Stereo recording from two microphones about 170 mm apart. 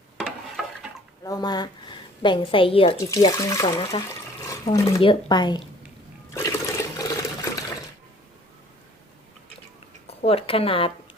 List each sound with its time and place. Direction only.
0.2 s a sound: 5° right (ahead or behind)
1.2 s a woman's voice: 20° left (ahead or behind)
3.0 s speech: 20° left (ahead or behind)
4.4 s a sound: 20° left (ahead or behind)
4.9 s speech: 30° left (ahead or behind)
6.3 s water: 20° left (ahead or behind)
10.2 s speech: 35° left (ahead or behind)